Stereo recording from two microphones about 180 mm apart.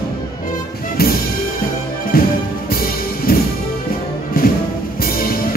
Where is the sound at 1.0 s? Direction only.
55° left (ahead or behind).